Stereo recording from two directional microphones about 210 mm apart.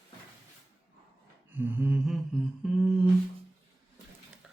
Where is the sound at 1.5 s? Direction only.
10° right (ahead or behind).